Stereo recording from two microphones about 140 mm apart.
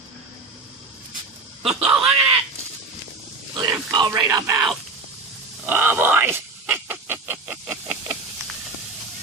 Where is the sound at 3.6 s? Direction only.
30° right (ahead or behind).